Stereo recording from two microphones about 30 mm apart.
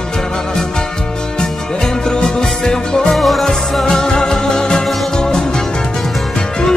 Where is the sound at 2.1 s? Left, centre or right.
Left.